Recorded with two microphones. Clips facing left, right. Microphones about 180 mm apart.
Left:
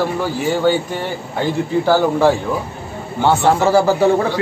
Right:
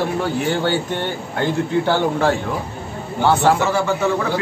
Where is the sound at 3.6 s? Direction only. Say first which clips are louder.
Left 6 dB; 35° left (ahead or behind).